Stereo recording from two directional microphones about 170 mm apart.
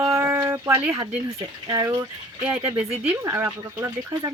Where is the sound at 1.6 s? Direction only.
25° right (ahead or behind).